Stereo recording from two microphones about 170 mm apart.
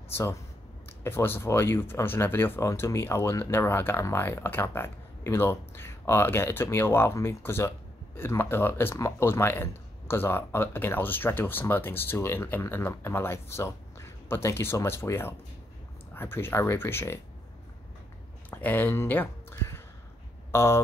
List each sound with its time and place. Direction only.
0.1 s speech: 15° left (ahead or behind)
18.5 s a sound: 10° left (ahead or behind)
20.5 s speech: 15° left (ahead or behind)